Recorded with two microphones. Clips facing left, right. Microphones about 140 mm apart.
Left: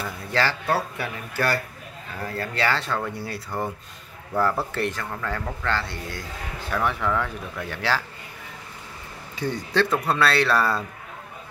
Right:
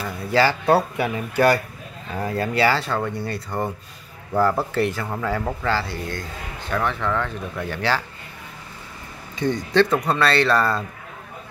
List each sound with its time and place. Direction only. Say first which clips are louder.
0.0 s speech: right 5 dB; 10° right (ahead or behind)
0.7 s speech: right 7 dB; 20° right (ahead or behind); by 8.0 s centre (ahead or behind)
9.3 s speech: right 5 dB; 5° left (ahead or behind)